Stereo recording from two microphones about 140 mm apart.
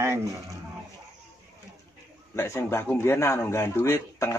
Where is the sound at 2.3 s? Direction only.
20° left (ahead or behind).